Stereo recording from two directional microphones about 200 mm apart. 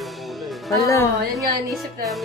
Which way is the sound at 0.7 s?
15° left (ahead or behind).